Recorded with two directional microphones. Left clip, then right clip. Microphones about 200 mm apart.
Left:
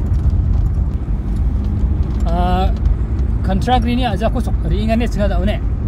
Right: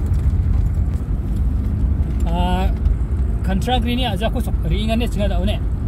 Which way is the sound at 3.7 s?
5° left (ahead or behind).